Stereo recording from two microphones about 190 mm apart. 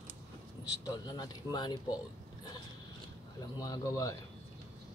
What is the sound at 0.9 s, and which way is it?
Speech, 20° left (ahead or behind).